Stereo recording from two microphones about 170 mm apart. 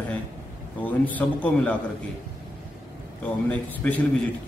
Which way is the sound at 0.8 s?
10° left (ahead or behind).